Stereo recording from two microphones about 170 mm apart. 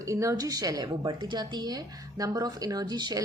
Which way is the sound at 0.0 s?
20° right (ahead or behind).